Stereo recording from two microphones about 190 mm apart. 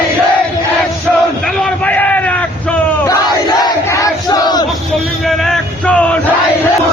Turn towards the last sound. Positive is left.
turn(degrees=5)  # may be behind; listen again after turning